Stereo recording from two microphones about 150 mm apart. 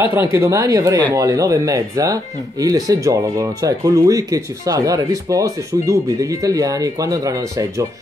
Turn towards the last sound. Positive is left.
turn(degrees=-20)  # may be behind; listen again after turning